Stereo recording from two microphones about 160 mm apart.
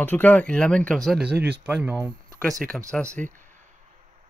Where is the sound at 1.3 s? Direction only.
90° right.